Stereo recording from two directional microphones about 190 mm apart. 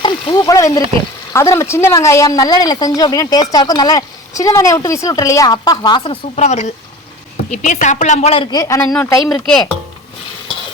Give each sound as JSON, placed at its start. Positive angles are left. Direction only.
{"t": 0.0, "sound": "speech", "side_deg": 20}